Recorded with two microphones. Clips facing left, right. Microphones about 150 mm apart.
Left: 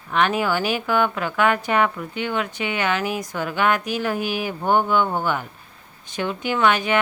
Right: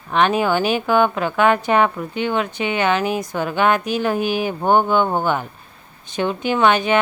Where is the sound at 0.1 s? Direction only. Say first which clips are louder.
Right 4 dB; 25° right (ahead or behind).